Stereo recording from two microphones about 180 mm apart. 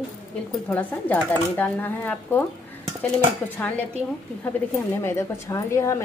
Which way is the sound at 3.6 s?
10° left (ahead or behind).